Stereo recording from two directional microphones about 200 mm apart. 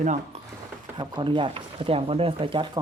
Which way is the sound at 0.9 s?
20° right (ahead or behind).